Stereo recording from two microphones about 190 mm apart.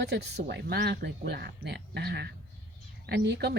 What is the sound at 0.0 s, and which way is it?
A woman's voice, 60° right (ahead or behind).